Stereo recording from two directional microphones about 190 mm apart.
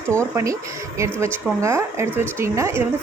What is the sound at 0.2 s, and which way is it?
A woman's voice, 15° right (ahead or behind).